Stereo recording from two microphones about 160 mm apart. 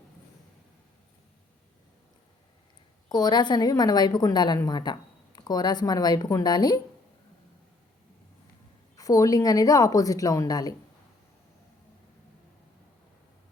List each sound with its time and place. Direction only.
3.1 s a woman's voice: 25° left (ahead or behind)
9.0 s a woman's voice: 20° left (ahead or behind)